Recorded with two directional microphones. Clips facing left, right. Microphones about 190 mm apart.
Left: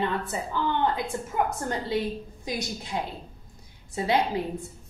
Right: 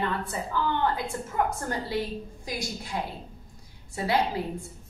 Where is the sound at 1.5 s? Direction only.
20° left (ahead or behind).